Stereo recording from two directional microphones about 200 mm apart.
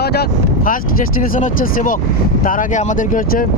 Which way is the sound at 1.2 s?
45° left (ahead or behind).